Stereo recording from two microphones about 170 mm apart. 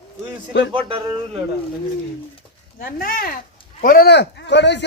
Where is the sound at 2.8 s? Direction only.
60° left (ahead or behind); by 4.9 s 90° left.